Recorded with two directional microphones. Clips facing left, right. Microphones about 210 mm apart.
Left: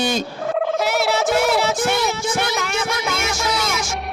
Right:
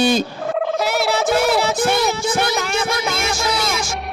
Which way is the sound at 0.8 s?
35° right (ahead or behind).